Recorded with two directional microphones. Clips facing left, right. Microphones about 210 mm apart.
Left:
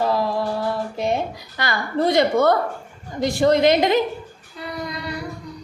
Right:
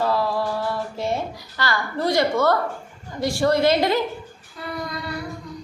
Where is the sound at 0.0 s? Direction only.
20° left (ahead or behind).